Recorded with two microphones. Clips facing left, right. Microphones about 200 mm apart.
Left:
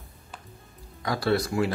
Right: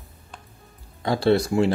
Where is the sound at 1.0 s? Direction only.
25° right (ahead or behind).